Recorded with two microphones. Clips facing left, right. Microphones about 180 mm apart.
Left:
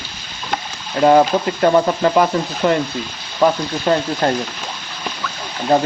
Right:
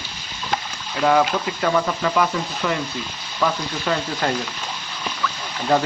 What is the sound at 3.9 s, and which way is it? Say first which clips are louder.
Speech: left 7 dB; 35° left (ahead or behind).